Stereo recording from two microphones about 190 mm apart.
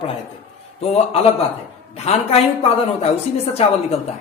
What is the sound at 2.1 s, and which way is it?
A man's voice, 30° left (ahead or behind).